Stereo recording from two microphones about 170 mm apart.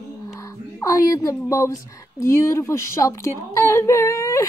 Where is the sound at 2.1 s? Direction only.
15° left (ahead or behind).